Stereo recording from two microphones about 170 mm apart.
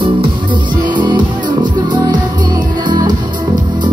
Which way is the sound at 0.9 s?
25° right (ahead or behind).